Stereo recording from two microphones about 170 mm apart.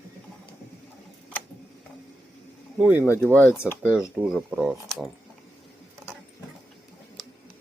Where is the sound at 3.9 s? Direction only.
5° right (ahead or behind).